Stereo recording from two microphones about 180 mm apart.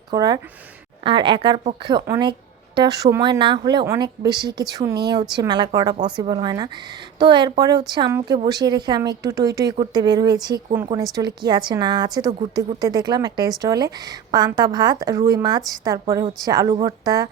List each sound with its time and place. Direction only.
0.1 s a woman's voice: 20° right (ahead or behind)